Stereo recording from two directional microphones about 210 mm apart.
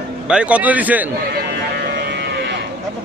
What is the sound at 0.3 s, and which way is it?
Speech, 5° right (ahead or behind).